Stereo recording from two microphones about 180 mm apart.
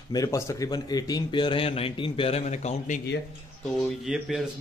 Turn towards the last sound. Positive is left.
turn(degrees=0)  # may be behind; listen again after turning